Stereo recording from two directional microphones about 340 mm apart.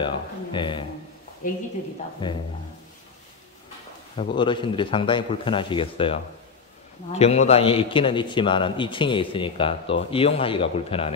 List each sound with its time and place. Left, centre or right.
0.0 s a man's voice: centre
2.2 s a man's voice: centre
4.2 s a man's voice: centre